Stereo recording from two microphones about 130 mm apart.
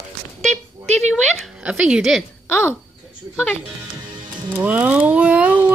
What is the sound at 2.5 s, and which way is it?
Speech, 15° left (ahead or behind).